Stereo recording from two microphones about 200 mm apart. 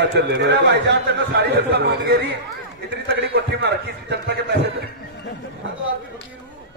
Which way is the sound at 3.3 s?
55° right (ahead or behind).